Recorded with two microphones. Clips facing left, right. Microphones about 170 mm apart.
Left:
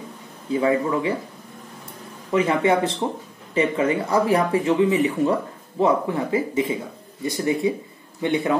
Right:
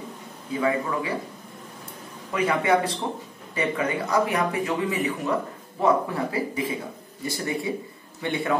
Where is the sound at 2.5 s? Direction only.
25° left (ahead or behind).